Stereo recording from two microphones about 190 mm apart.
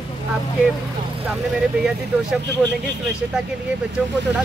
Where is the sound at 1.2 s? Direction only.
Centre (ahead or behind).